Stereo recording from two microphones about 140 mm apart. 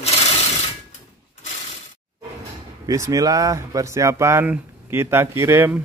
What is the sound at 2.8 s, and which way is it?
Speech, 25° right (ahead or behind).